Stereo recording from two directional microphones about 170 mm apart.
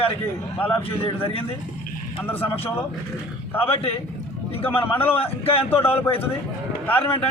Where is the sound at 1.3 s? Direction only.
35° left (ahead or behind).